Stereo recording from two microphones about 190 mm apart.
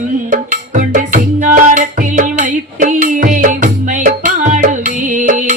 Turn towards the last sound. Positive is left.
turn(degrees=-40)  # may be behind; listen again after turning